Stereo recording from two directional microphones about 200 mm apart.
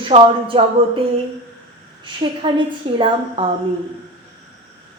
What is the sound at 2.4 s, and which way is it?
A woman's voice, 25° right (ahead or behind).